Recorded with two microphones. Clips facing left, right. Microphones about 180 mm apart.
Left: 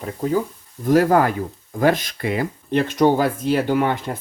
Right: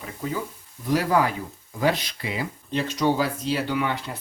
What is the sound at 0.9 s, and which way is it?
Speech, 50° left (ahead or behind).